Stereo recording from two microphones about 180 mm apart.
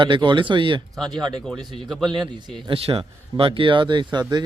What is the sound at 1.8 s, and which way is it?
Speech, centre (ahead or behind).